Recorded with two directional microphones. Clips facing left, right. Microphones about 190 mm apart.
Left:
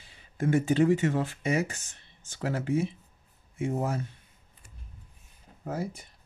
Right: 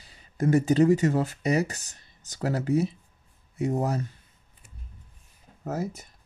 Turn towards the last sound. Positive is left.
turn(degrees=-45)  # may be behind; listen again after turning